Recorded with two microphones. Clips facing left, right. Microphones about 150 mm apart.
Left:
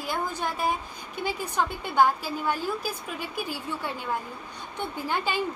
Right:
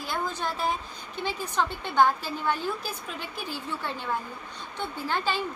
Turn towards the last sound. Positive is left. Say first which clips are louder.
# left 1 dB
turn(degrees=15)  # may be behind; listen again after turning